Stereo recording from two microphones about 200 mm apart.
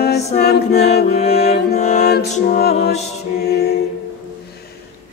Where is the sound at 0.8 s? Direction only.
50° left (ahead or behind).